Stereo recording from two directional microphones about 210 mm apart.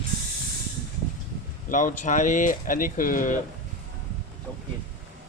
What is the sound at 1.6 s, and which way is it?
Speech, 40° left (ahead or behind).